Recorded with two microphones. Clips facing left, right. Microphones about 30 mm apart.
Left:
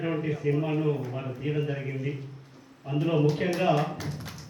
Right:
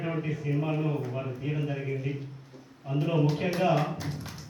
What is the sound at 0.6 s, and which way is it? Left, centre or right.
Speech, centre.